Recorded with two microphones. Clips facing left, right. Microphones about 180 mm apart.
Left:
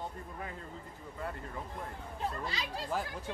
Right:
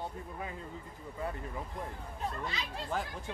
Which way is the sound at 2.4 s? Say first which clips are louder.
Left 1 dB; 35° left (ahead or behind).